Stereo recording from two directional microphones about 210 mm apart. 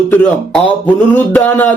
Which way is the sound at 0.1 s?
10° left (ahead or behind).